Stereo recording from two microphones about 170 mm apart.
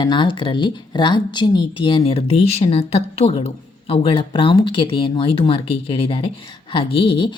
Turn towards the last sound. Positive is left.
turn(degrees=30)  # may be behind; listen again after turning